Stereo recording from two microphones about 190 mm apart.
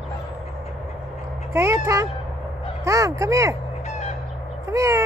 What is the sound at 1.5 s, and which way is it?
Speech, 15° right (ahead or behind).